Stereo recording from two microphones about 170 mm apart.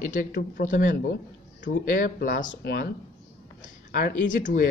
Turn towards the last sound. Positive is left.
turn(degrees=50)  # may be behind; listen again after turning